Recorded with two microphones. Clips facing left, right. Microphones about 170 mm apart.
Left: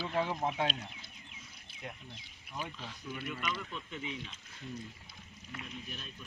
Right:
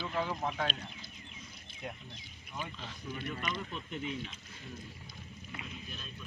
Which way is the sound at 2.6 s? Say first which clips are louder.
Even; 5° left (ahead or behind).